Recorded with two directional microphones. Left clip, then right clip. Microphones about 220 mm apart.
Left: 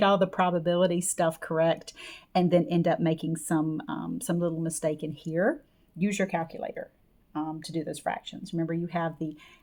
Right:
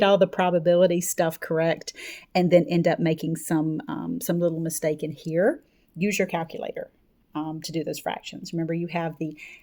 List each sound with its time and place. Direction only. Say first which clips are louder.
0.0 s speech: right 4 dB; 30° right (ahead or behind)